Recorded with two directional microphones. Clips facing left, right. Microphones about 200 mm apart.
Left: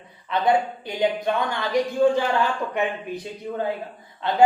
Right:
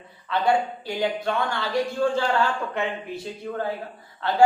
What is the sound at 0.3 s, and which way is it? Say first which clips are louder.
Speech: left 1 dB; 20° left (ahead or behind).